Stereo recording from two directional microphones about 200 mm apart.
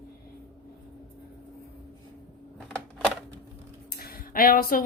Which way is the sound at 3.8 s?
50° left (ahead or behind).